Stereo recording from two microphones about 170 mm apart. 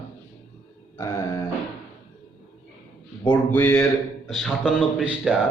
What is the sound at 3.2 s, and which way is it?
Speech, 10° left (ahead or behind).